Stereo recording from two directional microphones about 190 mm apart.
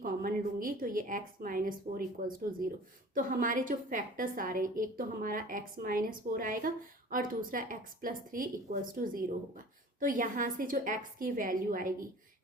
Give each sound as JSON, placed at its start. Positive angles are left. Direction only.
{"t": 0.0, "sound": "a woman's voice", "side_deg": -50}